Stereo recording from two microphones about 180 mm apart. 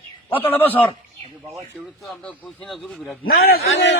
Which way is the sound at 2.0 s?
5° left (ahead or behind).